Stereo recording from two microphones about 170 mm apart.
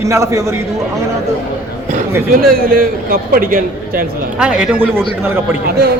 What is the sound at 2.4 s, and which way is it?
A man's voice, 60° right (ahead or behind).